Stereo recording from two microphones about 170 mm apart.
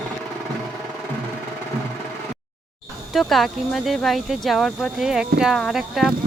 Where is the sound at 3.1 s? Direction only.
Centre (ahead or behind).